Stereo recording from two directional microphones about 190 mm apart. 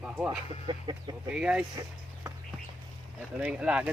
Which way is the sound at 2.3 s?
15° right (ahead or behind).